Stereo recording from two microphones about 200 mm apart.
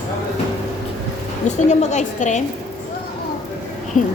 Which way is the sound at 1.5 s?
35° left (ahead or behind).